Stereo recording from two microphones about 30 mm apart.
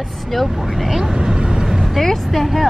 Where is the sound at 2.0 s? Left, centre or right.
Centre.